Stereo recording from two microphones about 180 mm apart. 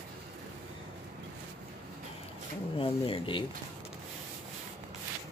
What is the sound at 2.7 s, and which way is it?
Speech, 30° left (ahead or behind).